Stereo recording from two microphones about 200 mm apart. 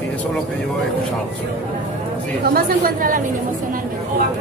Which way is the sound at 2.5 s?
50° right (ahead or behind).